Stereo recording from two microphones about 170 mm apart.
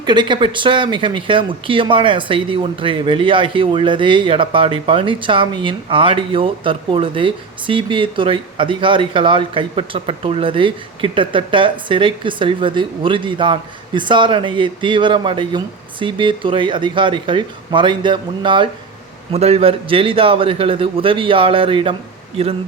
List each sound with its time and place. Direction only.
0.0 s a man's voice: 25° right (ahead or behind)